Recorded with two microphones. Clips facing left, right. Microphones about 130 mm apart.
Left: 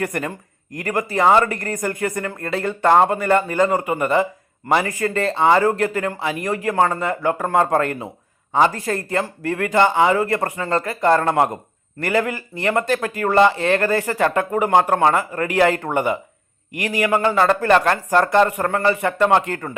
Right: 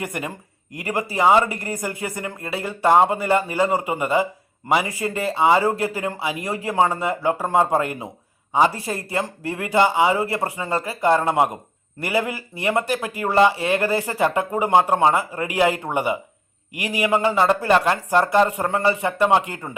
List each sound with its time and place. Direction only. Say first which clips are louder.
0.0 s speech: left 4 dB; 10° right (ahead or behind)
2.0 s speech: left 5 dB; 20° right (ahead or behind)
2.4 s speech: left 2 dB; 10° right (ahead or behind)